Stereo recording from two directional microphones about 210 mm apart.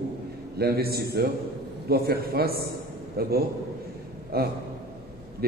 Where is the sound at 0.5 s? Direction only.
50° right (ahead or behind).